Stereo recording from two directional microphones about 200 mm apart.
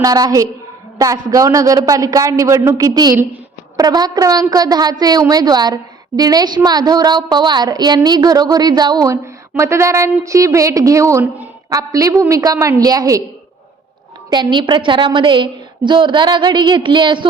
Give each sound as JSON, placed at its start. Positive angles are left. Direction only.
{"t": 0.0, "sound": "a man's voice", "side_deg": -15}
{"t": 14.3, "sound": "a woman's voice", "side_deg": -20}